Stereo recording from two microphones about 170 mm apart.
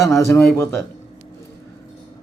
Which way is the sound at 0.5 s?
15° left (ahead or behind).